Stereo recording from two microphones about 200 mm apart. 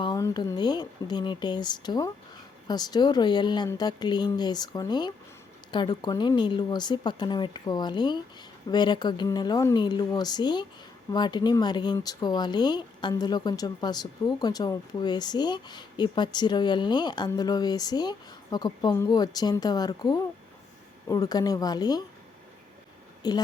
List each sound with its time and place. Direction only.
0.0 s speech: 20° left (ahead or behind)
23.2 s speech: 20° left (ahead or behind)